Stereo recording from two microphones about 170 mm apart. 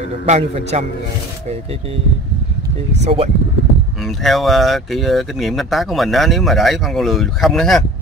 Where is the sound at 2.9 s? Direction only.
40° right (ahead or behind).